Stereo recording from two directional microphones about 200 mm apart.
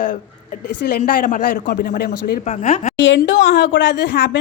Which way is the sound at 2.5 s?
40° left (ahead or behind).